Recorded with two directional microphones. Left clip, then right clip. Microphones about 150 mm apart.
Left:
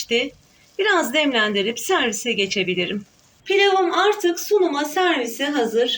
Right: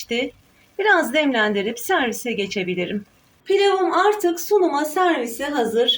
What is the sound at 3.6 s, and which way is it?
A woman's voice, 45° right (ahead or behind).